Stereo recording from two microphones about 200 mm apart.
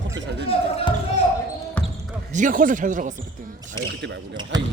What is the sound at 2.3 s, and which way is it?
Speech, 40° right (ahead or behind).